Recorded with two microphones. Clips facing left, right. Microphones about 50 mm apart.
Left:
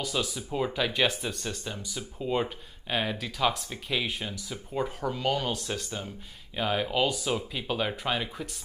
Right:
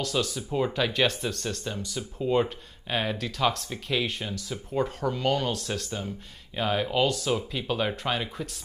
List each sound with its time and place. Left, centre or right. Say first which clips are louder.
0.0 s speech: right 3 dB; centre